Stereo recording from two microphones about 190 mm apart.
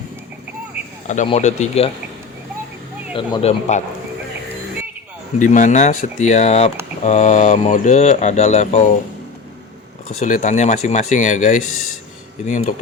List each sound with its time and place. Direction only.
1.0 s speech: 40° left (ahead or behind)
3.1 s speech: 30° left (ahead or behind)
3.7 s speech: 40° left (ahead or behind)
5.4 s speech: 40° left (ahead or behind)
10.1 s speech: 40° left (ahead or behind)